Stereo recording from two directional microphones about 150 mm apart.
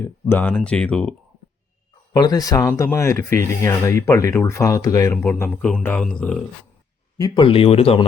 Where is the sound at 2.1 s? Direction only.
25° left (ahead or behind); by 6.4 s 5° left (ahead or behind).